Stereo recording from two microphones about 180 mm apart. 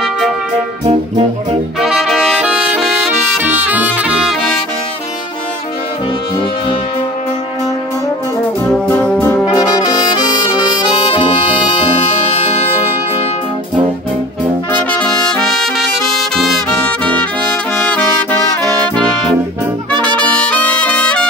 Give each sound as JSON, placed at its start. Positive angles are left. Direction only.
{"t": 0.8, "sound": "music", "side_deg": -35}
{"t": 1.8, "sound": "brass instrument", "side_deg": 0}
{"t": 3.7, "sound": "brass instrument", "side_deg": -10}
{"t": 8.7, "sound": "music", "side_deg": 10}
{"t": 9.5, "sound": "brass instrument", "side_deg": 20}
{"t": 14.7, "sound": "brass instrument", "side_deg": 10}
{"t": 20.2, "sound": "harmonica", "side_deg": 10}